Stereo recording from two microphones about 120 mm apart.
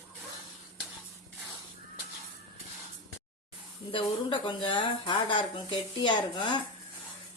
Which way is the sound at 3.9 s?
40° left (ahead or behind).